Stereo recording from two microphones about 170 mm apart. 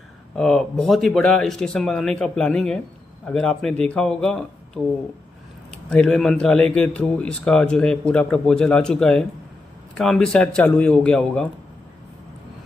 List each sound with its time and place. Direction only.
0.4 s a man's voice: centre (ahead or behind)